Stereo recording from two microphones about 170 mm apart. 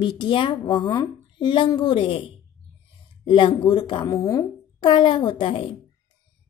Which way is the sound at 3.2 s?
25° left (ahead or behind).